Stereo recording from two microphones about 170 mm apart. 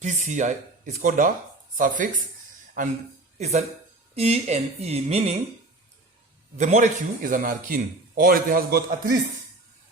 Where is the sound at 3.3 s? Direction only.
40° right (ahead or behind).